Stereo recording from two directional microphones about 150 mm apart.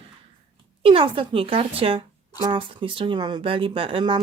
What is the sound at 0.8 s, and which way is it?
Speech, 35° right (ahead or behind).